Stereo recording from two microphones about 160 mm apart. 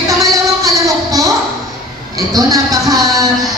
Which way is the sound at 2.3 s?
20° right (ahead or behind).